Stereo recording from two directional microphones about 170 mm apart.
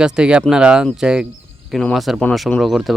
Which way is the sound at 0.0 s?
5° right (ahead or behind).